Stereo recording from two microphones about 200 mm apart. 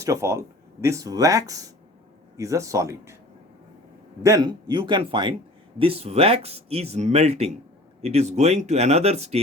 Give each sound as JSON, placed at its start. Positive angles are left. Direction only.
{"t": 0.0, "sound": "speech", "side_deg": -15}
{"t": 4.2, "sound": "a man's voice", "side_deg": -20}